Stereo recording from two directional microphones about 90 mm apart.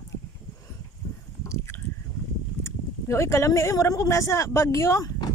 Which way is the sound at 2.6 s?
30° left (ahead or behind).